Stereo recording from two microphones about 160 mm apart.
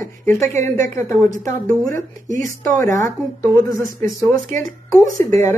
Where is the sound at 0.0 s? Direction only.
15° left (ahead or behind).